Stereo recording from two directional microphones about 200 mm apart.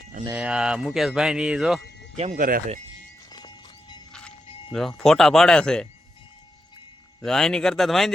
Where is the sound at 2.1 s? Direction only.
35° right (ahead or behind).